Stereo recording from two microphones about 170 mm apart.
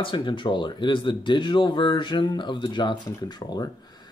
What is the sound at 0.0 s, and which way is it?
Speech, 30° left (ahead or behind).